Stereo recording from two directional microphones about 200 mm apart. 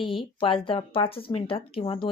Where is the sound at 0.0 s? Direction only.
25° left (ahead or behind).